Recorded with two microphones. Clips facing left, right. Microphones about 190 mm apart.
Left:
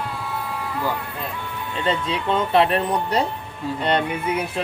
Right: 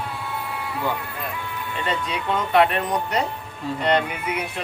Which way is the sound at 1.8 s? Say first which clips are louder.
Left 4 dB; 25° left (ahead or behind).